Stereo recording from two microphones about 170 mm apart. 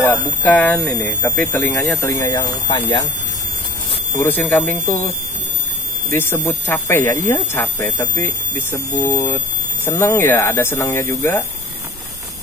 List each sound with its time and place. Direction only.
0.0 s speech: 5° left (ahead or behind); by 3.1 s 25° left (ahead or behind)
4.2 s speech: 10° left (ahead or behind)
6.0 s speech: 15° left (ahead or behind)